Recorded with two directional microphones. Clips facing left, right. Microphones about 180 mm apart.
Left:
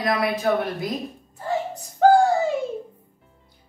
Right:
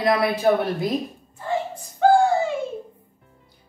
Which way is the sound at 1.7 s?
40° left (ahead or behind).